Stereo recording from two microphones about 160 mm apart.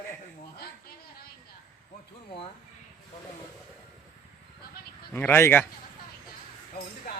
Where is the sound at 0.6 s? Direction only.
75° left (ahead or behind).